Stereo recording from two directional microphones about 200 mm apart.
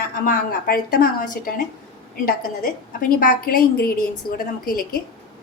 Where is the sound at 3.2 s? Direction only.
45° left (ahead or behind).